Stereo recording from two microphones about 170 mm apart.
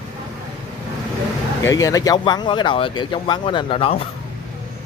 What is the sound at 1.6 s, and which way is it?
Speech, 20° left (ahead or behind).